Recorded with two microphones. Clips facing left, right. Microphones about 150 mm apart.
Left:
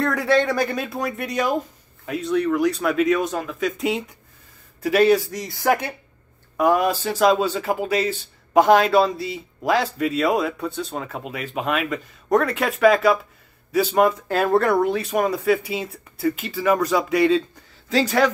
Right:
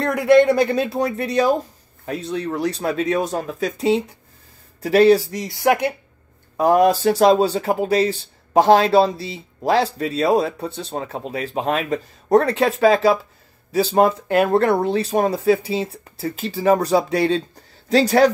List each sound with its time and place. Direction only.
0.0 s speech: 15° right (ahead or behind)
6.5 s speech: 35° right (ahead or behind)